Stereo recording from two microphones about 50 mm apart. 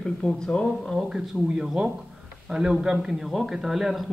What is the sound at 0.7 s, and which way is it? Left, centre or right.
Speech, centre.